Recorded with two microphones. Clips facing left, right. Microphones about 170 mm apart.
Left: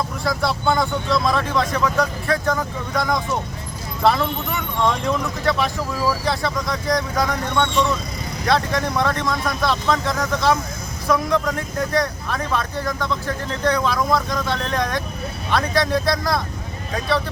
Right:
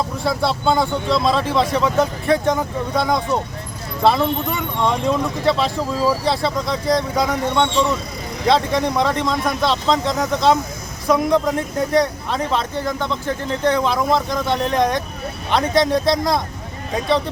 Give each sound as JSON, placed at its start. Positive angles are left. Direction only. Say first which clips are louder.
{"t": 0.3, "sound": "speech", "louder": "right 2 dB", "side_deg": -25}